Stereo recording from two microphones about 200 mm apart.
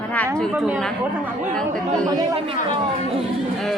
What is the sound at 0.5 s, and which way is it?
Speech, 5° right (ahead or behind).